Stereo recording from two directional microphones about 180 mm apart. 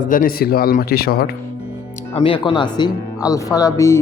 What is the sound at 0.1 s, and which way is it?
A man's voice, 55° left (ahead or behind).